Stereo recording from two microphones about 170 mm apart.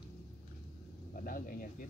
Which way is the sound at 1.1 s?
55° left (ahead or behind).